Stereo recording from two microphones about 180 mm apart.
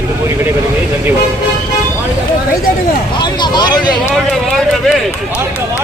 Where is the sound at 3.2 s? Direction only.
25° left (ahead or behind).